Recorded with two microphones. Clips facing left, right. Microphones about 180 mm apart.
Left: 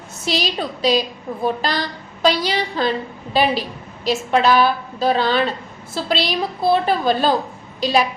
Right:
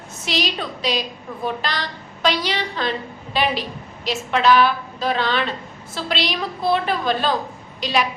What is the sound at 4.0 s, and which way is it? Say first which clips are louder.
A woman's voice: left 3 dB; 40° left (ahead or behind).